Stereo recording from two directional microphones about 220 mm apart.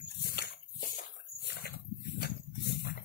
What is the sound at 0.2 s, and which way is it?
Dog, 45° left (ahead or behind).